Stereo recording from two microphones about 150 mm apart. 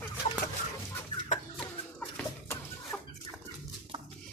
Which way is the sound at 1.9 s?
15° left (ahead or behind).